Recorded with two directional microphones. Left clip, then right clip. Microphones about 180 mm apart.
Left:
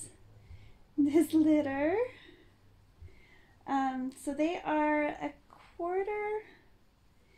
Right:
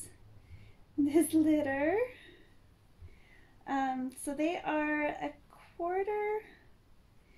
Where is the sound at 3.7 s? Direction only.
20° left (ahead or behind).